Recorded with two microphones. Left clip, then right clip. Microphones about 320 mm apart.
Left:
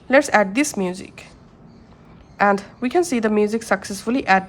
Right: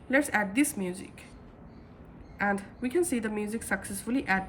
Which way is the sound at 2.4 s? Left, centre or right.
Centre.